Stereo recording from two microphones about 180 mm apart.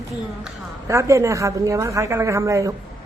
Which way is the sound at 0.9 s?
15° right (ahead or behind).